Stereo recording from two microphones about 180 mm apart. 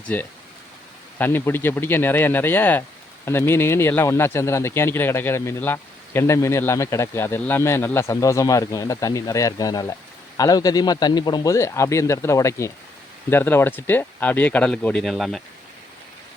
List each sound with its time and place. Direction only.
1.2 s speech: 10° left (ahead or behind)